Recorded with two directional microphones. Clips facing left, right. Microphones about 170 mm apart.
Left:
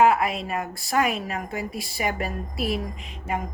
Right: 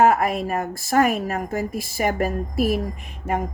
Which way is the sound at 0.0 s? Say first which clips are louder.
Right 2 dB; 45° right (ahead or behind).